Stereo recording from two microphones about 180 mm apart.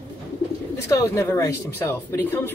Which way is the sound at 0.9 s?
15° left (ahead or behind).